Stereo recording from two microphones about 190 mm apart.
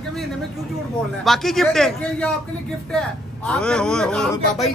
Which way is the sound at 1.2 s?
Centre (ahead or behind).